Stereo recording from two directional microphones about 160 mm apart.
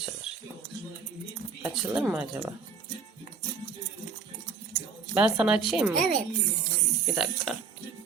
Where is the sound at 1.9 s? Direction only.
5° right (ahead or behind).